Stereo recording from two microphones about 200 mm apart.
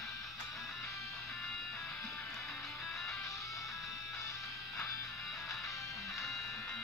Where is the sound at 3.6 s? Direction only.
Centre (ahead or behind).